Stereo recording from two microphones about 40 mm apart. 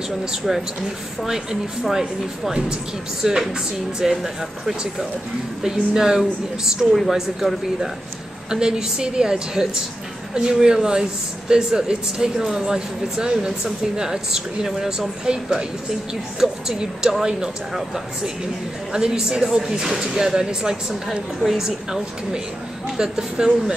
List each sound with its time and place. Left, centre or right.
0.4 s a woman's voice: centre
3.2 s speech: centre
8.5 s speech: centre
21.4 s a woman's voice: centre
21.6 s speech: centre